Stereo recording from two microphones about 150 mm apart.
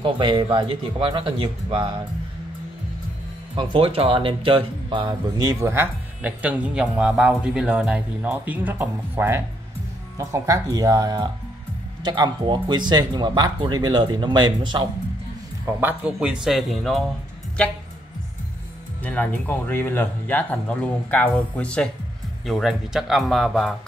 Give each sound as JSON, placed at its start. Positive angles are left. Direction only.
{"t": 0.0, "sound": "speech", "side_deg": -30}
{"t": 3.5, "sound": "speech", "side_deg": -35}
{"t": 5.6, "sound": "speech", "side_deg": -15}
{"t": 15.8, "sound": "speech", "side_deg": -5}
{"t": 19.0, "sound": "speech", "side_deg": 10}